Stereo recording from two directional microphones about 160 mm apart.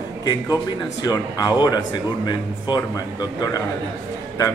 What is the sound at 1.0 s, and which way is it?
Speech, 25° left (ahead or behind).